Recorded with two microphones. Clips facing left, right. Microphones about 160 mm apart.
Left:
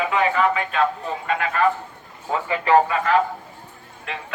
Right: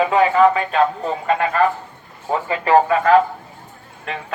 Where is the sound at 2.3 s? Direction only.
35° right (ahead or behind).